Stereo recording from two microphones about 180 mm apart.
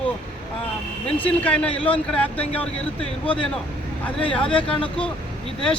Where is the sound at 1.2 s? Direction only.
5° left (ahead or behind).